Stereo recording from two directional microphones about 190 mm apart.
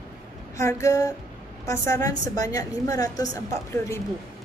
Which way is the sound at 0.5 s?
15° left (ahead or behind).